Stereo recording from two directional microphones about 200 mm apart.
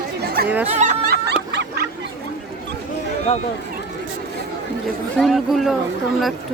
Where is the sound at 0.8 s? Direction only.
40° right (ahead or behind).